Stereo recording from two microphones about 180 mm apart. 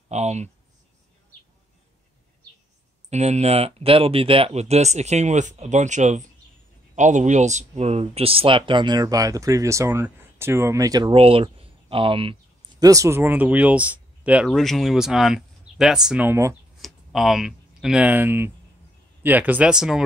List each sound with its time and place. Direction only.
0.1 s speech: 40° right (ahead or behind)
3.1 s speech: 40° right (ahead or behind)
12.8 s speech: 15° right (ahead or behind)
16.8 s speech: centre (ahead or behind)